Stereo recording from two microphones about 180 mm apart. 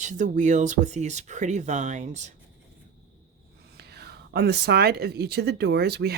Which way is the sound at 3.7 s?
65° right (ahead or behind).